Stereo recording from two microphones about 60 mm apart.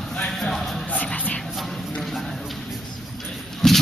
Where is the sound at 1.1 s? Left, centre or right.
Left.